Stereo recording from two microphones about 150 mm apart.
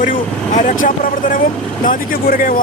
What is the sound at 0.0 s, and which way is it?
Speech, 60° left (ahead or behind).